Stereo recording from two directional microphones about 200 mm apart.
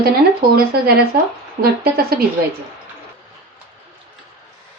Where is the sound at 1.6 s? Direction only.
50° right (ahead or behind).